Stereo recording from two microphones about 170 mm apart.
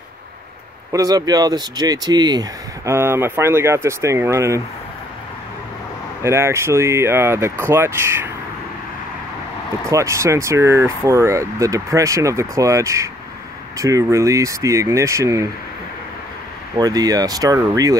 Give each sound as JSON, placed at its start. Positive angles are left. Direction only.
{"t": 0.9, "sound": "speech", "side_deg": -20}
{"t": 6.2, "sound": "speech", "side_deg": -15}
{"t": 9.8, "sound": "speech", "side_deg": -15}
{"t": 16.7, "sound": "speech", "side_deg": -20}